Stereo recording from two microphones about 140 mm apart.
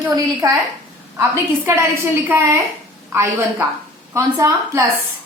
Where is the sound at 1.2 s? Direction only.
15° right (ahead or behind).